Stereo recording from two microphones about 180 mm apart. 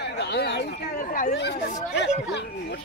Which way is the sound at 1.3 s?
70° left (ahead or behind).